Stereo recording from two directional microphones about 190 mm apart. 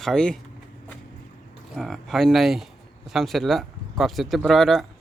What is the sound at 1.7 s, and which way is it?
Speech, centre (ahead or behind).